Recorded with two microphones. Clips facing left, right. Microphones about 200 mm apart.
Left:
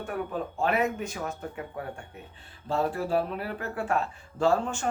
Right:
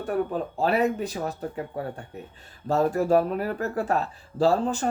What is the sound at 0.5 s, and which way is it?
Speech, 35° right (ahead or behind).